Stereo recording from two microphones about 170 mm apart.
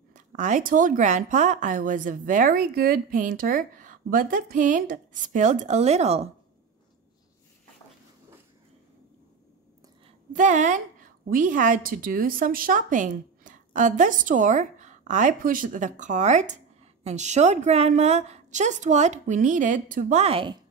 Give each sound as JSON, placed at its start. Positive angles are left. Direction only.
{"t": 0.1, "sound": "speech", "side_deg": -45}
{"t": 10.3, "sound": "a woman's voice", "side_deg": -45}